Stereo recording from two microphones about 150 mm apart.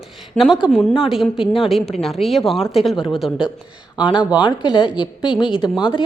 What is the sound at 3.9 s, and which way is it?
Speech, 30° left (ahead or behind).